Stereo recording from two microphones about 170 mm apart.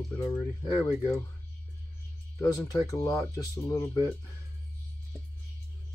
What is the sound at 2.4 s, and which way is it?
Speech, 20° left (ahead or behind).